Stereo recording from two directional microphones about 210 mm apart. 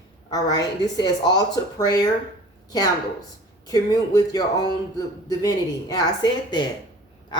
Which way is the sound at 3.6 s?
15° left (ahead or behind).